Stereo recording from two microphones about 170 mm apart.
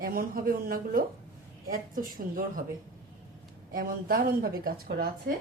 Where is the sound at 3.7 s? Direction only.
60° right (ahead or behind).